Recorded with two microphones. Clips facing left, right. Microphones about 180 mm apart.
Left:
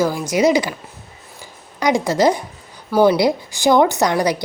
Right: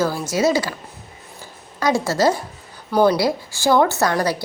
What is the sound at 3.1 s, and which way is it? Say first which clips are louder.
A woman's voice: left 3 dB; 20° left (ahead or behind).